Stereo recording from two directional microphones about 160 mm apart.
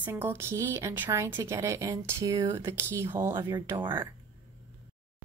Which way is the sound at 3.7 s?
30° right (ahead or behind).